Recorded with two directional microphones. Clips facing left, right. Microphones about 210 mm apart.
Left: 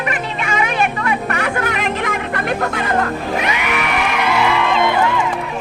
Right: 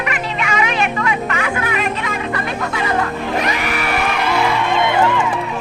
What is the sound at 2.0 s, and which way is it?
Music, 50° left (ahead or behind).